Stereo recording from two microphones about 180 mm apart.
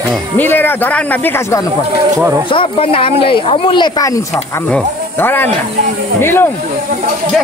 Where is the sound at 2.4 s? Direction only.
30° left (ahead or behind); by 6.4 s 15° left (ahead or behind).